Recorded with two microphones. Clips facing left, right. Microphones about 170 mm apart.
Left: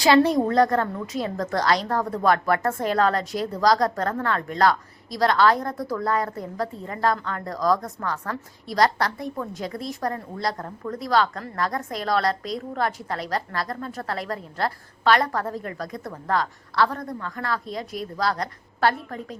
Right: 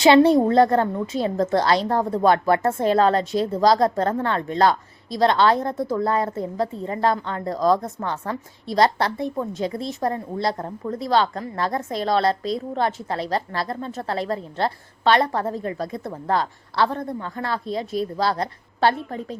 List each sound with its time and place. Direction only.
0.0 s a woman's voice: 25° right (ahead or behind)